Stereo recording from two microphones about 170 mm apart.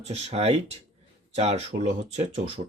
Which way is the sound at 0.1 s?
40° right (ahead or behind).